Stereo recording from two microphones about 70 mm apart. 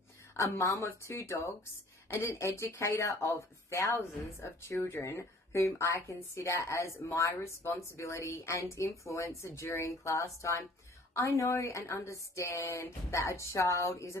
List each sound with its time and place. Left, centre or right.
0.4 s speech: left
2.1 s speech: left